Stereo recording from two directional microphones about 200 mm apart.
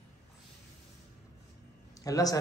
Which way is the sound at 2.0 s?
15° left (ahead or behind).